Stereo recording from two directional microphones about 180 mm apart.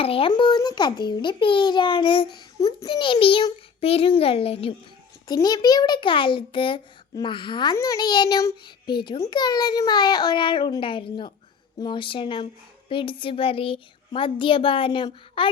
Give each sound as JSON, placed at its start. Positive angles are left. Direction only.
{"t": 0.0, "sound": "a child's voice", "side_deg": 30}
{"t": 5.3, "sound": "a child's voice", "side_deg": 20}